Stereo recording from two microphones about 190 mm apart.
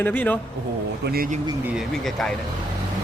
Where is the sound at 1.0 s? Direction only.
50° right (ahead or behind).